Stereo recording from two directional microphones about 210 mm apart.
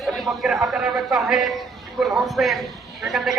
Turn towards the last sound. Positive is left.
turn(degrees=0)  # may be behind; listen again after turning